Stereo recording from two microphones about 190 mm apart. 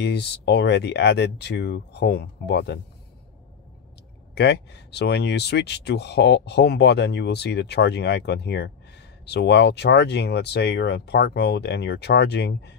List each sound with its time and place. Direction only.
0.0 s speech: 60° left (ahead or behind)
4.4 s speech: 65° left (ahead or behind)